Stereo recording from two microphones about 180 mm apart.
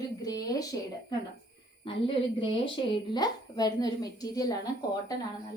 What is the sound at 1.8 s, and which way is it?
A woman's voice, 30° left (ahead or behind).